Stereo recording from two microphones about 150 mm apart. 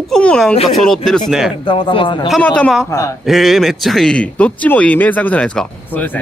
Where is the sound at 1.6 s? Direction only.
35° left (ahead or behind).